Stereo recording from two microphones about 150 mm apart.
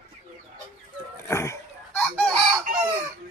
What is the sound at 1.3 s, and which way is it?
Speech, 20° left (ahead or behind).